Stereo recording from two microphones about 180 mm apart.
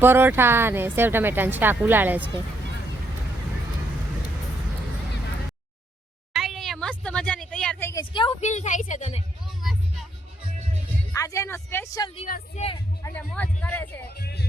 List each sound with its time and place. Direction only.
0.0 s speech: 10° right (ahead or behind)
6.3 s a sound: centre (ahead or behind)
8.1 s a sound: 30° left (ahead or behind)
11.1 s music: 15° left (ahead or behind)
12.7 s speech: 15° left (ahead or behind)
14.1 s music: 60° left (ahead or behind)